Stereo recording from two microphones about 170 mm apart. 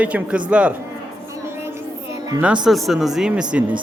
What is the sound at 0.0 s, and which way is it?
Speech, 10° right (ahead or behind).